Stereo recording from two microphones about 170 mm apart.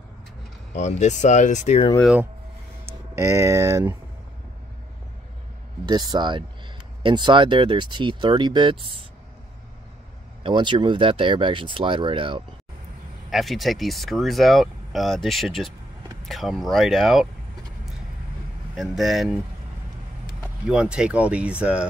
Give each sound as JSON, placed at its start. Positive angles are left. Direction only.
{"t": 0.7, "sound": "speech", "side_deg": 45}
{"t": 2.9, "sound": "speech", "side_deg": -15}
{"t": 5.9, "sound": "speech", "side_deg": -25}
{"t": 10.4, "sound": "speech", "side_deg": -25}
{"t": 13.3, "sound": "speech", "side_deg": 0}
{"t": 18.8, "sound": "speech", "side_deg": 0}
{"t": 20.6, "sound": "speech", "side_deg": -5}